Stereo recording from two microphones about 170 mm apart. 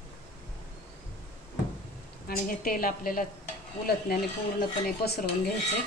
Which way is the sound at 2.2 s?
55° left (ahead or behind).